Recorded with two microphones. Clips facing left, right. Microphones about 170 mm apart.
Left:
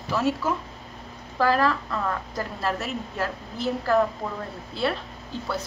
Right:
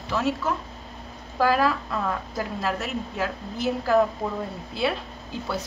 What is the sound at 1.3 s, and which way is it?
A woman's voice, 5° right (ahead or behind).